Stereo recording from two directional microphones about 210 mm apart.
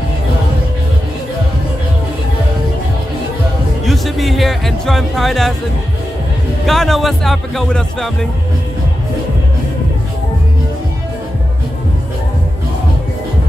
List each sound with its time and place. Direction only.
3.8 s music: centre (ahead or behind)
6.6 s speech: centre (ahead or behind)